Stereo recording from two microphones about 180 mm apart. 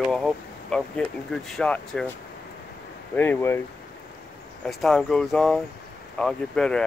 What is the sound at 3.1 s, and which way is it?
Speech, 10° left (ahead or behind).